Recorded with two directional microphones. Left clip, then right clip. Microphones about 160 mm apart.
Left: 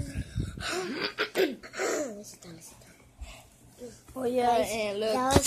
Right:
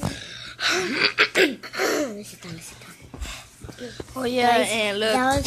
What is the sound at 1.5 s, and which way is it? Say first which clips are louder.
Speech: right 7 dB; 40° right (ahead or behind).